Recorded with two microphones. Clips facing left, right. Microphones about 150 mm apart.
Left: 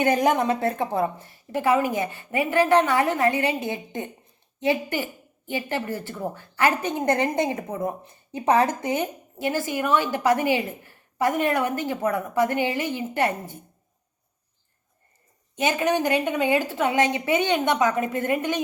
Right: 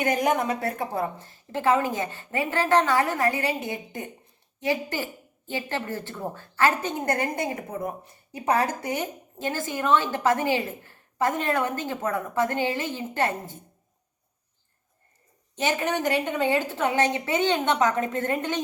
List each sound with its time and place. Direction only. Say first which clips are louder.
0.0 s a woman's voice: left 3 dB; 30° left (ahead or behind); by 13.6 s 15° left (ahead or behind)
15.5 s a woman's voice: left 3 dB; 15° left (ahead or behind)